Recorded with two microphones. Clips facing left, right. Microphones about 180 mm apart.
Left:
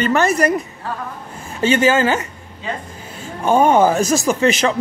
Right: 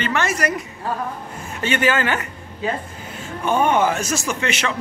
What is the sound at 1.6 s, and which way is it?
Speech, 30° left (ahead or behind).